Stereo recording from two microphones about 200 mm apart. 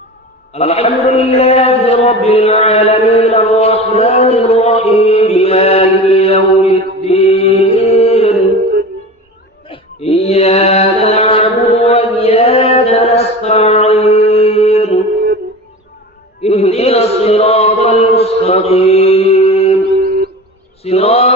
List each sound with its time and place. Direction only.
0.5 s chant: 30° left (ahead or behind)
9.6 s mantra: 30° left (ahead or behind)
16.4 s chant: 30° left (ahead or behind)
20.8 s mantra: 30° left (ahead or behind)